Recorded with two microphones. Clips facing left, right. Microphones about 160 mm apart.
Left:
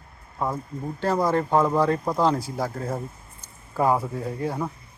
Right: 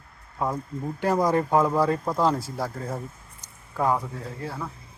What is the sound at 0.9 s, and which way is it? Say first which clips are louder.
Speech: even; 15° right (ahead or behind).